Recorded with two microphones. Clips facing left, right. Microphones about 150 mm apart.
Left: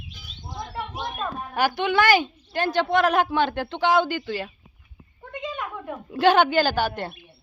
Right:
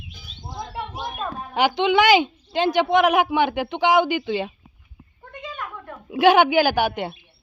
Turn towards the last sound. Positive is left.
turn(degrees=-15)  # may be behind; listen again after turning